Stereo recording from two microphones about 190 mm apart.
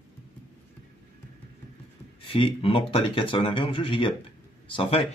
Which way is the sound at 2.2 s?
30° left (ahead or behind).